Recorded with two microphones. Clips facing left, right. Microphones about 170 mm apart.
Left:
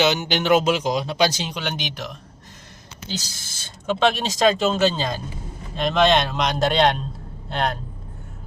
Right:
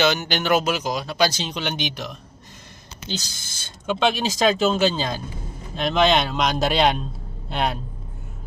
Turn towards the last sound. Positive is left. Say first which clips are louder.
# even
turn(degrees=-5)  # may be behind; listen again after turning